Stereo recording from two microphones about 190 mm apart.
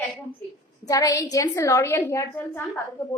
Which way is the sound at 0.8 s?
15° left (ahead or behind).